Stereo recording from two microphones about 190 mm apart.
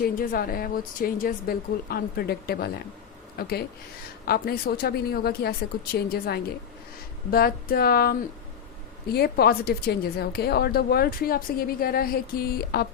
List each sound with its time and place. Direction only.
0.0 s a woman's voice: 50° left (ahead or behind)
9.1 s a woman's voice: 55° left (ahead or behind)